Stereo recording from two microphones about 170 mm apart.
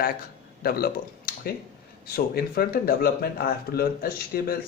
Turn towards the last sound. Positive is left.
turn(degrees=60)  # may be behind; listen again after turning